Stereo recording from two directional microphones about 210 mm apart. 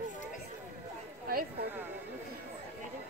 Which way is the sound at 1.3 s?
45° right (ahead or behind).